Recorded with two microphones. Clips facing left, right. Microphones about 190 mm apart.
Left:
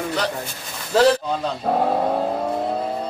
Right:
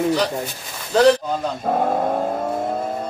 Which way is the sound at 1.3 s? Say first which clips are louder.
Even; centre (ahead or behind).